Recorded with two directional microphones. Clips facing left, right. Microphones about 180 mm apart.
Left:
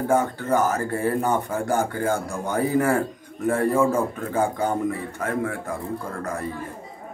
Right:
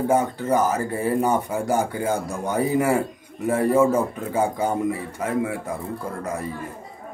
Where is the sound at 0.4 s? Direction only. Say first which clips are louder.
Right 1 dB; 10° right (ahead or behind).